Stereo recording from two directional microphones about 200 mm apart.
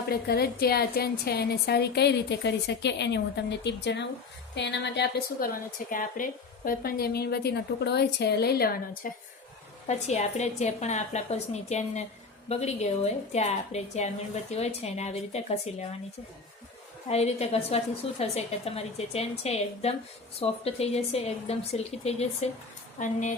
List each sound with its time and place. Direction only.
0.1 s a woman's voice: 50° left (ahead or behind)
5.9 s a woman's voice: 40° left (ahead or behind)
17.1 s a woman's voice: 30° left (ahead or behind)